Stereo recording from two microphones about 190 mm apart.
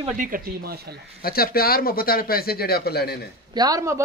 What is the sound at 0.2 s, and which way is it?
Speech, 45° right (ahead or behind).